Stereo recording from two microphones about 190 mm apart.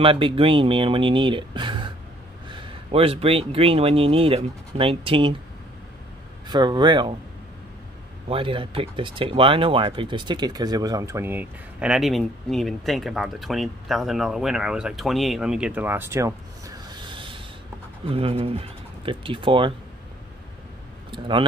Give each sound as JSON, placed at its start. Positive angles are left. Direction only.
{"t": 0.0, "sound": "speech", "side_deg": -30}
{"t": 6.4, "sound": "speech", "side_deg": -20}
{"t": 8.3, "sound": "speech", "side_deg": -30}
{"t": 21.1, "sound": "speech", "side_deg": -25}